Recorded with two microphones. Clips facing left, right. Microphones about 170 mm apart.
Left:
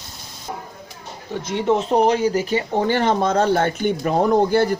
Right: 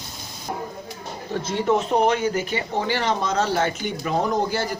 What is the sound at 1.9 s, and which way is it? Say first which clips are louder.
Speech: left 3 dB; 35° left (ahead or behind).